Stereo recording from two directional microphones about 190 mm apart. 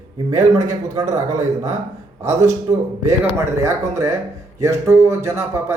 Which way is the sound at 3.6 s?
15° right (ahead or behind).